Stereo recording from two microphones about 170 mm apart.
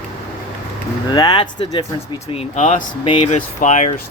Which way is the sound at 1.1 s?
25° left (ahead or behind).